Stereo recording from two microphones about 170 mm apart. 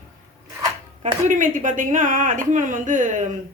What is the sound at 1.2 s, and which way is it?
Speech, 50° right (ahead or behind).